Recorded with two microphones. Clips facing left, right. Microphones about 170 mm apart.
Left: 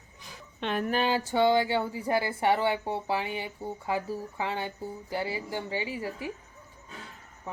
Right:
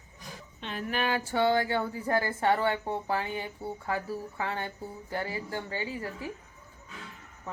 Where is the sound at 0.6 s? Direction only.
65° left (ahead or behind).